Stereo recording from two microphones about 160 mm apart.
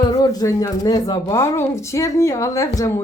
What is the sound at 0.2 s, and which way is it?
Speech, 20° left (ahead or behind).